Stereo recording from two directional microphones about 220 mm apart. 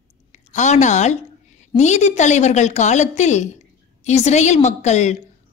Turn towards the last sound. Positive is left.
turn(degrees=30)  # may be behind; listen again after turning